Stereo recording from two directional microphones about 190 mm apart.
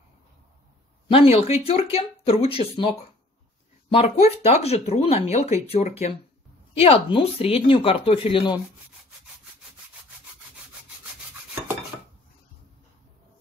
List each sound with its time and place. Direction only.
1.0 s speech: 30° left (ahead or behind)